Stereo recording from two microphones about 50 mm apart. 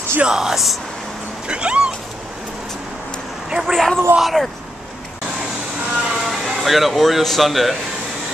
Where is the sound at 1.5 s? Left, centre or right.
Centre.